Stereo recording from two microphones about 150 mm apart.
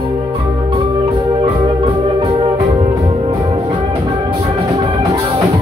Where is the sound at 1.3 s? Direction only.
35° right (ahead or behind).